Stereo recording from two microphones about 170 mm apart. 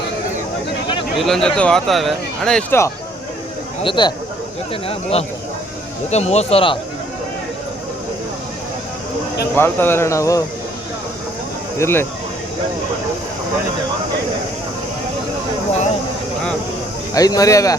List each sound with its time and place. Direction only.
1.2 s speech: centre (ahead or behind)
3.8 s speech: 25° left (ahead or behind)
9.6 s speech: 10° left (ahead or behind)
11.8 s speech: 15° left (ahead or behind)
17.2 s speech: 20° left (ahead or behind)